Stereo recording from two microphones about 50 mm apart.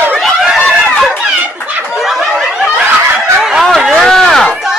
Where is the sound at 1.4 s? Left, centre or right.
Right.